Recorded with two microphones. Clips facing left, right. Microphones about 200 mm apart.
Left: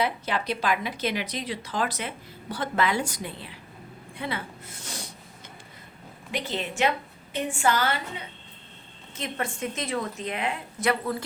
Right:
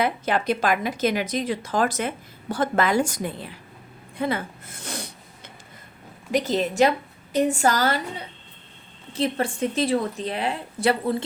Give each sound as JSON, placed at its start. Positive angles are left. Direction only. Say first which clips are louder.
{"t": 0.0, "sound": "a woman's voice", "louder": "right 4 dB", "side_deg": -50}
{"t": 4.2, "sound": "a sound", "louder": "right 7 dB", "side_deg": -45}
{"t": 6.3, "sound": "a woman's voice", "louder": "right 8 dB", "side_deg": -40}